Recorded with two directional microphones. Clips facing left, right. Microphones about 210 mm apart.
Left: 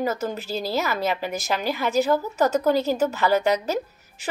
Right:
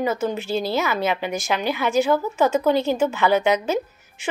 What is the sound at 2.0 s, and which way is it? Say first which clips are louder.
A woman's voice: right 2 dB; 40° left (ahead or behind).